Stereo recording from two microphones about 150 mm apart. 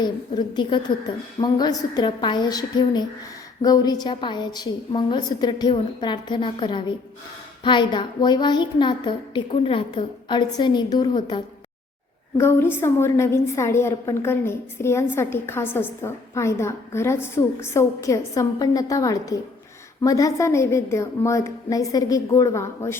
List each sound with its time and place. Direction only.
0.0 s a woman's voice: 30° left (ahead or behind)
12.4 s a woman's voice: 15° left (ahead or behind)